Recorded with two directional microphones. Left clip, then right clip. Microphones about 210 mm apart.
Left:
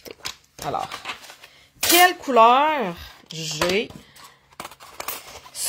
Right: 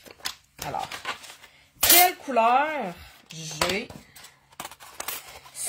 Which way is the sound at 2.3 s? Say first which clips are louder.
Left 6 dB; 50° left (ahead or behind).